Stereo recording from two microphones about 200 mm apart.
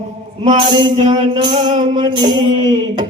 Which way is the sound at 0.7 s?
25° right (ahead or behind).